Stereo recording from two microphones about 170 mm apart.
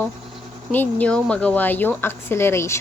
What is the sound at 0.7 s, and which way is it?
A woman's voice, 10° left (ahead or behind).